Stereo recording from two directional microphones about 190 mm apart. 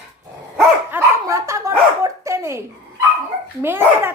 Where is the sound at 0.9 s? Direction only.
15° right (ahead or behind).